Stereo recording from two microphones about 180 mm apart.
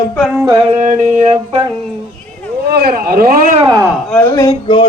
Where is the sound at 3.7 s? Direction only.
15° right (ahead or behind).